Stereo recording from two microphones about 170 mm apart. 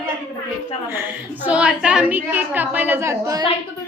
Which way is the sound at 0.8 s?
15° right (ahead or behind).